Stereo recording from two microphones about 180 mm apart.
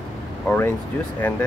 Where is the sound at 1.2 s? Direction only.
10° left (ahead or behind).